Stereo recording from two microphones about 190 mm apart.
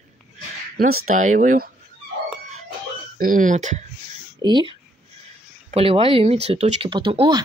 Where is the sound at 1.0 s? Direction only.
40° right (ahead or behind).